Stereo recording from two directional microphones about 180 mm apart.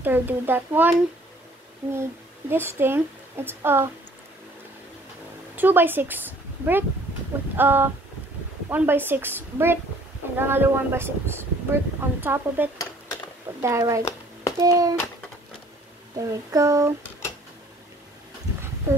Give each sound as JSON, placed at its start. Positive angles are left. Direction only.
{"t": 0.0, "sound": "speech", "side_deg": -10}
{"t": 2.5, "sound": "speech", "side_deg": -10}
{"t": 5.6, "sound": "speech", "side_deg": -10}
{"t": 12.7, "sound": "dishes", "side_deg": 20}
{"t": 13.6, "sound": "a child's voice", "side_deg": -15}
{"t": 16.2, "sound": "speech", "side_deg": -20}